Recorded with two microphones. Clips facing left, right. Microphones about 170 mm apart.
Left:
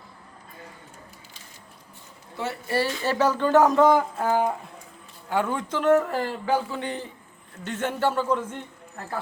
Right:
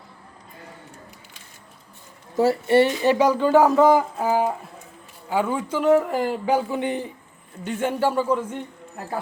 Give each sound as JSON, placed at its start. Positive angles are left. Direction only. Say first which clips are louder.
{"t": 2.3, "sound": "speech", "louder": "right 11 dB", "side_deg": -35}
{"t": 2.7, "sound": "speech", "louder": "right 6 dB", "side_deg": -20}